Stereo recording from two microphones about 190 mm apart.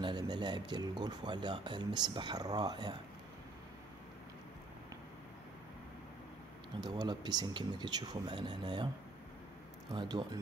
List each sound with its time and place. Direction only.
0.0 s speech: 25° right (ahead or behind)
6.8 s speech: 20° right (ahead or behind)
9.9 s speech: 20° right (ahead or behind)